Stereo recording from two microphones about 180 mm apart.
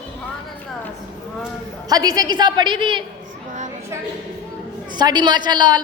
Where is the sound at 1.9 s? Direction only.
20° right (ahead or behind).